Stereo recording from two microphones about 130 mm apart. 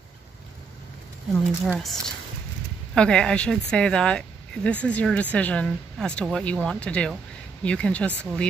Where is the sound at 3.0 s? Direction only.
5° left (ahead or behind).